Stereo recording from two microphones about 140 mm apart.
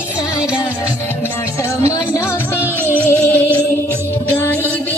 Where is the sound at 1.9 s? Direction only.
15° left (ahead or behind).